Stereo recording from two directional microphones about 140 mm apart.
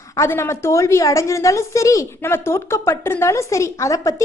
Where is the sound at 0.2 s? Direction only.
20° left (ahead or behind).